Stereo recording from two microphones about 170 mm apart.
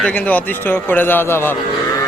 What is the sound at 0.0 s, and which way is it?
A man's voice, 10° left (ahead or behind).